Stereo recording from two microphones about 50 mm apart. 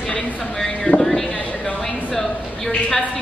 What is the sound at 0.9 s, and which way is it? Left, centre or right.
Speech, left.